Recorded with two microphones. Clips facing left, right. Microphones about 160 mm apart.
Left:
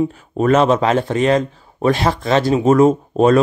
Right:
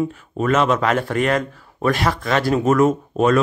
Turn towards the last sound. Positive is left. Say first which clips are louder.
# left 4 dB
turn(degrees=30)  # may be behind; listen again after turning